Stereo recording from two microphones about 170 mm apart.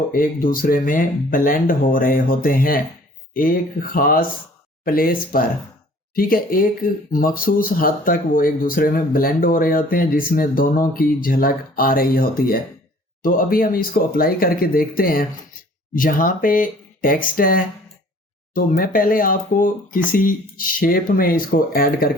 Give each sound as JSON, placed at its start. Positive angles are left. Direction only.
{"t": 0.1, "sound": "speech", "side_deg": 55}